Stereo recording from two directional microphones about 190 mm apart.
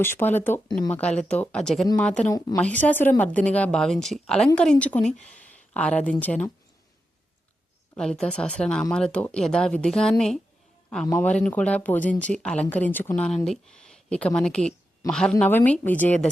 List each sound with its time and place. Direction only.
0.0 s speech: 10° left (ahead or behind)
5.0 s speech: 40° left (ahead or behind)
5.3 s speech: 5° left (ahead or behind)
7.9 s speech: 5° left (ahead or behind)